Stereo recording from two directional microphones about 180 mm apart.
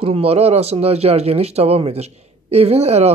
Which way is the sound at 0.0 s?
35° right (ahead or behind).